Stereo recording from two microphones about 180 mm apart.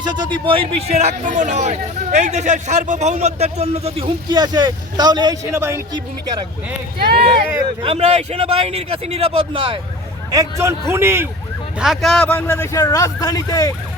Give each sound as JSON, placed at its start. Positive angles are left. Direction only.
{"t": 0.0, "sound": "speech", "side_deg": -25}
{"t": 7.0, "sound": "speech", "side_deg": -60}
{"t": 7.8, "sound": "speech", "side_deg": -35}
{"t": 10.3, "sound": "a man's voice", "side_deg": -15}
{"t": 11.8, "sound": "a man's voice", "side_deg": 0}